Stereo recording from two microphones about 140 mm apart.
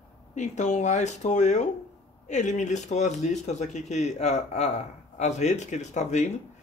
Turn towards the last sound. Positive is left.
turn(degrees=55)  # may be behind; listen again after turning